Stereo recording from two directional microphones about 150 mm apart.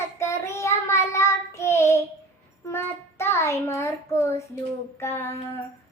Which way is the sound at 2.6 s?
15° left (ahead or behind).